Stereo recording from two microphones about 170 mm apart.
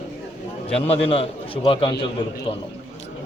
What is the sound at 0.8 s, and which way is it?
A man's voice, 35° left (ahead or behind).